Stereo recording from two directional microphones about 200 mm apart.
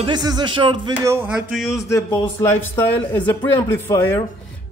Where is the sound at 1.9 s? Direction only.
15° left (ahead or behind).